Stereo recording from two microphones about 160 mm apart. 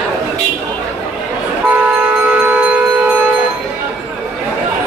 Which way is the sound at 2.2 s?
10° right (ahead or behind).